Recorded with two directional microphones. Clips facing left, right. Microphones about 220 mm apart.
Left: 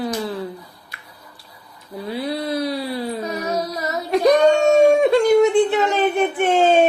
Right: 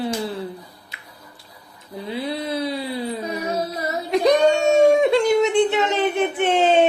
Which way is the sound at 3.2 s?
30° right (ahead or behind).